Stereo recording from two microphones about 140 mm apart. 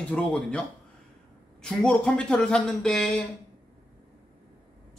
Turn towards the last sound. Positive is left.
turn(degrees=5)  # may be behind; listen again after turning